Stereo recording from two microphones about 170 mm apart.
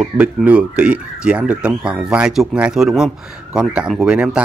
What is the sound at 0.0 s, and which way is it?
Speech, 5° right (ahead or behind).